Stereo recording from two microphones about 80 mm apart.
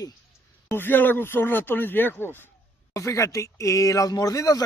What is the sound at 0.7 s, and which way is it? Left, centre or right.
Speech, left.